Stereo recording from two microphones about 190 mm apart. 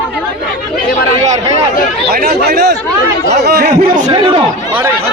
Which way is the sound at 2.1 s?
55° right (ahead or behind).